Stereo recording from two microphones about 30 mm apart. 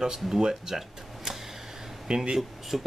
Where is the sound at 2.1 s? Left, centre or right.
Right.